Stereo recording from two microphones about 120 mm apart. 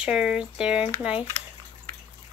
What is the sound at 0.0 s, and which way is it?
Speech, 10° right (ahead or behind).